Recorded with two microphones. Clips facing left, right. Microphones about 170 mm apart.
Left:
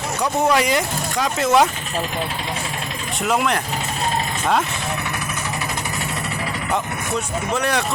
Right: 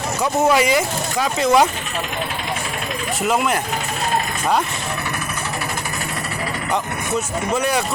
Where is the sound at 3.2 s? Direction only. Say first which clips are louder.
Even; centre (ahead or behind).